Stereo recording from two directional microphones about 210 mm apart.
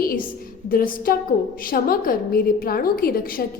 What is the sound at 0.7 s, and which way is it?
A woman's voice, 45° left (ahead or behind).